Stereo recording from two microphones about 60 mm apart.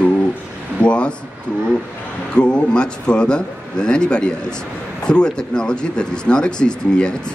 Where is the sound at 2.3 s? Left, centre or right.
Centre.